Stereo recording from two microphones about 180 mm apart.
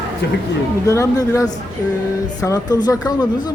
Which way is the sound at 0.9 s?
15° left (ahead or behind).